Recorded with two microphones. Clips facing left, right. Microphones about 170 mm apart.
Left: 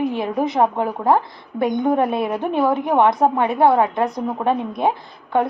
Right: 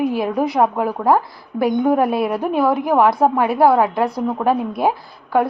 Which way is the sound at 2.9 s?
25° left (ahead or behind).